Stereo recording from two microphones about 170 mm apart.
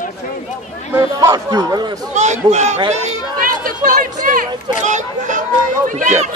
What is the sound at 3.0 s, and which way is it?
Chatter, 50° right (ahead or behind).